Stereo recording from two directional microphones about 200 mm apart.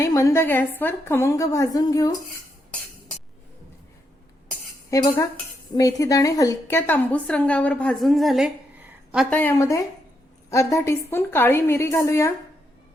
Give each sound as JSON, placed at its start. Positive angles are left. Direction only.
{"t": 0.0, "sound": "a woman's voice", "side_deg": 15}
{"t": 4.9, "sound": "a woman's voice", "side_deg": 15}